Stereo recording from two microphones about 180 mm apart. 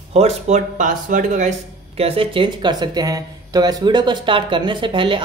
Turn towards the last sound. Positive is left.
turn(degrees=-25)  # may be behind; listen again after turning